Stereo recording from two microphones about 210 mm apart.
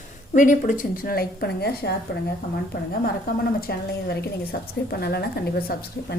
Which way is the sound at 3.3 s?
45° left (ahead or behind).